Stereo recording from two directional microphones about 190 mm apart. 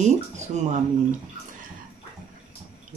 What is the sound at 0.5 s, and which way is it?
Speech, 35° right (ahead or behind).